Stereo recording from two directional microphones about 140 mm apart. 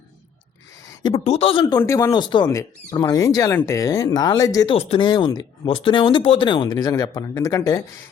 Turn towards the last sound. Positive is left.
turn(degrees=20)  # may be behind; listen again after turning